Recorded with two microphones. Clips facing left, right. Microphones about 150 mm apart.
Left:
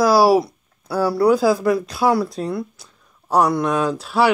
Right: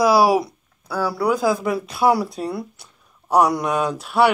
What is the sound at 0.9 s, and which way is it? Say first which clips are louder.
Speech: left 5 dB; 5° left (ahead or behind).